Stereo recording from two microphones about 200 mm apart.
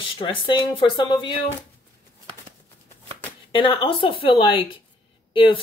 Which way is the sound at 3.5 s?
25° left (ahead or behind).